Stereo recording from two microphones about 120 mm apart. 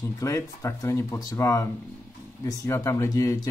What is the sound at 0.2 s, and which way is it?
Speech, 25° left (ahead or behind).